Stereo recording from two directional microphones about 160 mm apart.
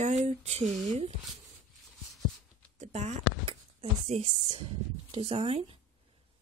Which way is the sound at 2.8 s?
45° right (ahead or behind).